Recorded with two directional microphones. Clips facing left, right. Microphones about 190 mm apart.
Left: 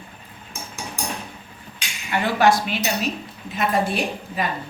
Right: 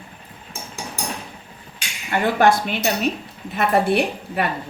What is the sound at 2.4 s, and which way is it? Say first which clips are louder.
Speech: even; 55° right (ahead or behind).